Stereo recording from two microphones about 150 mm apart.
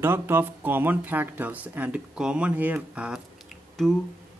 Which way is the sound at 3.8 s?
Centre (ahead or behind).